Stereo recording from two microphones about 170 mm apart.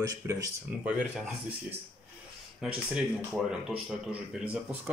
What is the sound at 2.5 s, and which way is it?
Speech, 5° right (ahead or behind).